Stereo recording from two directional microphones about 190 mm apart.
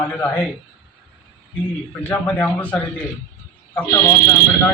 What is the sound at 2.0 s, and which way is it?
A man's voice, 10° left (ahead or behind).